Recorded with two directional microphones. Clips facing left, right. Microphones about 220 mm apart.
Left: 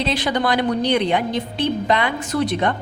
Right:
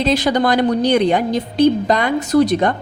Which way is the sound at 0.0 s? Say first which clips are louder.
Right 5 dB; 45° right (ahead or behind).